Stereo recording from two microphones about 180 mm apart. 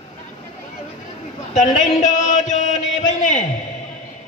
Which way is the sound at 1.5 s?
40° left (ahead or behind).